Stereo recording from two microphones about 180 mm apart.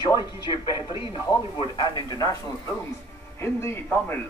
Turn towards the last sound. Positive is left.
turn(degrees=10)  # may be behind; listen again after turning